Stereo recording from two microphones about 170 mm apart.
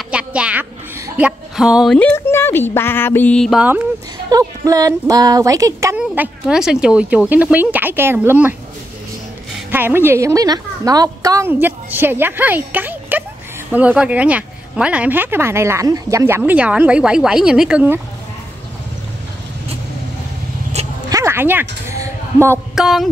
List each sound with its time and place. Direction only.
0.1 s a woman's voice: 5° right (ahead or behind)
2.0 s speech: 10° left (ahead or behind); by 3.8 s 5° right (ahead or behind)
4.3 s speech: 20° right (ahead or behind)
5.9 s speech: 10° right (ahead or behind)
9.7 s speech: 10° right (ahead or behind)
21.1 s a sound: 15° right (ahead or behind)
22.8 s a sound: centre (ahead or behind)